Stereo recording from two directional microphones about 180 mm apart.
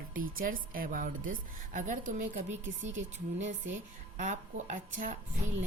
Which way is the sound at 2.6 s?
90° right.